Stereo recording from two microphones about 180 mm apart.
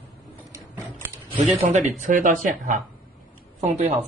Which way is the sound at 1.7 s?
45° right (ahead or behind).